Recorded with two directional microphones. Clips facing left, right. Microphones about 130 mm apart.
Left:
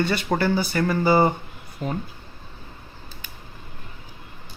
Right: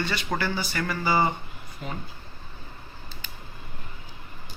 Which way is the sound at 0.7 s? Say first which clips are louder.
Left 5 dB; 35° left (ahead or behind).